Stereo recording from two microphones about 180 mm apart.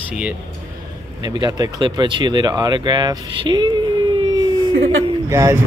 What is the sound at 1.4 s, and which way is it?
Speech, 20° right (ahead or behind).